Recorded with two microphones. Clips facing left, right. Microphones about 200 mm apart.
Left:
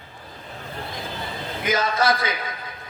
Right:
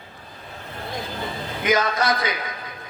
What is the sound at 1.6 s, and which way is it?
Speech, 25° left (ahead or behind).